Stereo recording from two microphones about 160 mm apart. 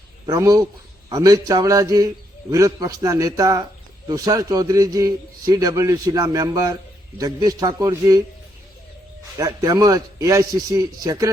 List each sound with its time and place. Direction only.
0.3 s a man's voice: 25° right (ahead or behind)
9.4 s a man's voice: 20° right (ahead or behind)